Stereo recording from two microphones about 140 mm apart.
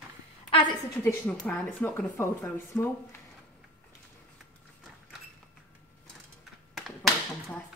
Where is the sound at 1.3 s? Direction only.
10° left (ahead or behind).